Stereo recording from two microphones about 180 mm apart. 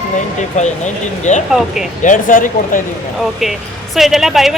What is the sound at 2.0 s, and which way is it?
Speech, 50° left (ahead or behind).